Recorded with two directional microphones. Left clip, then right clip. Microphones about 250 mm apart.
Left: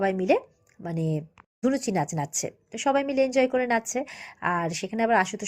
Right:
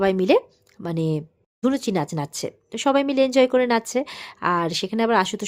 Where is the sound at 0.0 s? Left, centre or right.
Centre.